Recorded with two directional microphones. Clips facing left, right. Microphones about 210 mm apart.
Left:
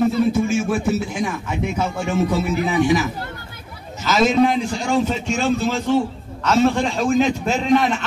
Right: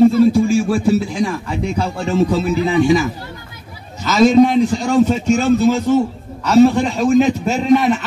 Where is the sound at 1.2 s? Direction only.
5° left (ahead or behind).